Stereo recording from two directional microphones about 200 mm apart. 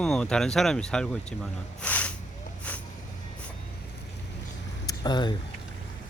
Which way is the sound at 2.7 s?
5° left (ahead or behind).